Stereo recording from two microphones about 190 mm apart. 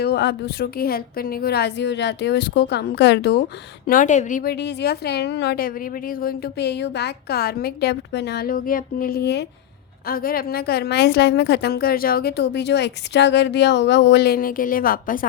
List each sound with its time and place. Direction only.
0.0 s a woman's voice: 60° left (ahead or behind)
3.8 s a woman's voice: 45° left (ahead or behind)
4.5 s a woman's voice: 60° left (ahead or behind)
10.1 s a woman's voice: 50° left (ahead or behind)